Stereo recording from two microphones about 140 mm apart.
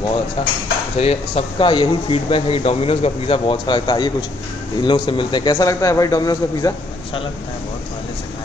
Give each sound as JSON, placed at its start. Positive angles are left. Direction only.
{"t": 0.4, "sound": "a man's voice", "side_deg": 40}